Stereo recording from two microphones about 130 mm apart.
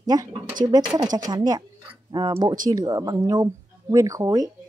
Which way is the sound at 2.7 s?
30° right (ahead or behind).